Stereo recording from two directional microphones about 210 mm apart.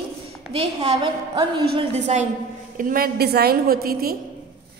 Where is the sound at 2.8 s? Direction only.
45° right (ahead or behind).